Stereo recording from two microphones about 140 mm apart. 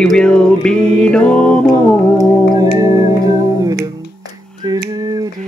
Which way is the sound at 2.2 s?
25° right (ahead or behind).